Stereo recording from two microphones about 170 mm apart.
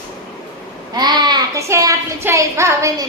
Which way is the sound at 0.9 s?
25° right (ahead or behind).